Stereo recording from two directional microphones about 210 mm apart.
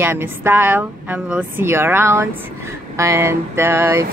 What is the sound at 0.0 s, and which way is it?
Speech, 10° right (ahead or behind).